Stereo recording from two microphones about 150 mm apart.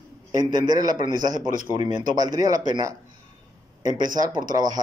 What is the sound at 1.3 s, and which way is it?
Speech, 65° right (ahead or behind).